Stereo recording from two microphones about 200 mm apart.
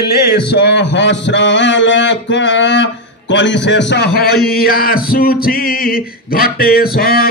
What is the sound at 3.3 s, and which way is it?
A man's voice, 65° left (ahead or behind).